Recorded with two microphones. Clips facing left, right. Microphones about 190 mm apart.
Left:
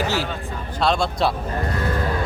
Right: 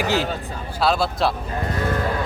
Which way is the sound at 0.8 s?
5° right (ahead or behind).